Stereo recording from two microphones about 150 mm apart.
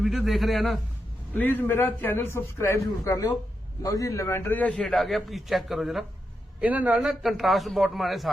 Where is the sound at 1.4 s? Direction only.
15° left (ahead or behind).